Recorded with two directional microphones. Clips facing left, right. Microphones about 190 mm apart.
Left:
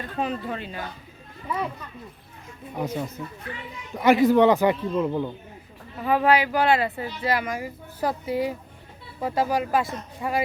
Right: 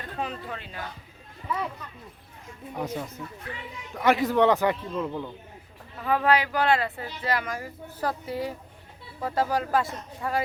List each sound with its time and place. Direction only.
0.2 s speech: 15° left (ahead or behind)
2.7 s a man's voice: 5° left (ahead or behind)
4.6 s speech: 15° left (ahead or behind)